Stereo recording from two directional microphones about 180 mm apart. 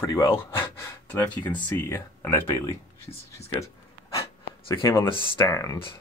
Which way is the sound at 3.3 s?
15° left (ahead or behind).